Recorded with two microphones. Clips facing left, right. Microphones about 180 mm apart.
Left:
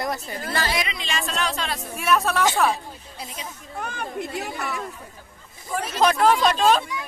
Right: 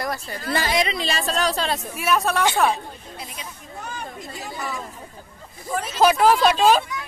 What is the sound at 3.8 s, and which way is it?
Chatter, 60° left (ahead or behind).